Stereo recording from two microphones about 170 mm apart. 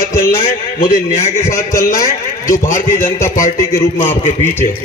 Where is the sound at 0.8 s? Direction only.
50° left (ahead or behind).